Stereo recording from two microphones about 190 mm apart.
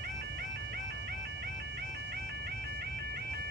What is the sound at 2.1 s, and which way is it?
Music, 60° right (ahead or behind).